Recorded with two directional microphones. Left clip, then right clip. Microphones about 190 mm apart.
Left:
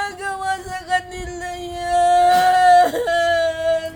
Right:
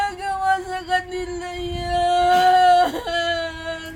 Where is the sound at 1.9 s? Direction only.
25° left (ahead or behind).